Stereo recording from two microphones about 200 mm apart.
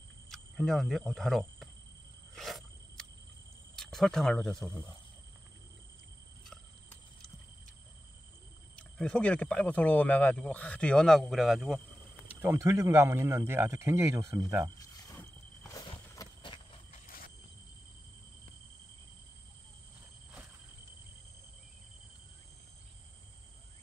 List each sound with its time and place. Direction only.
0.3 s speech: centre (ahead or behind)
2.3 s a sound: centre (ahead or behind)
3.7 s speech: centre (ahead or behind)
6.5 s cricket: 5° left (ahead or behind)
8.7 s speech: 5° left (ahead or behind)
12.3 s speech: 15° right (ahead or behind)
14.8 s a sound: 10° left (ahead or behind)